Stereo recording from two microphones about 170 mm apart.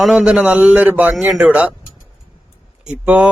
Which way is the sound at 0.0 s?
5° right (ahead or behind).